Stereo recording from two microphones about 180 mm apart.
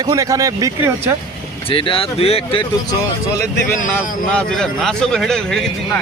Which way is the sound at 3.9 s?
5° left (ahead or behind).